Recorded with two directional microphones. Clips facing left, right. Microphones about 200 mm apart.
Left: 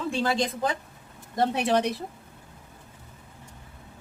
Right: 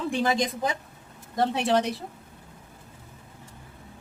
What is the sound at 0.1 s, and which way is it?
Speech, 15° right (ahead or behind).